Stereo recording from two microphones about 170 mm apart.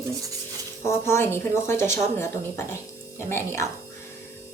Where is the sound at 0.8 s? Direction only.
15° left (ahead or behind).